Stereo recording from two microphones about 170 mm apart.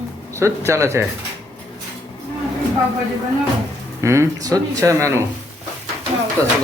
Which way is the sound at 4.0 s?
15° right (ahead or behind).